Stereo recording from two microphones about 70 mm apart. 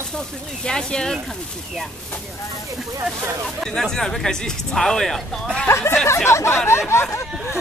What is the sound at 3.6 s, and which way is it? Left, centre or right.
Speech, centre.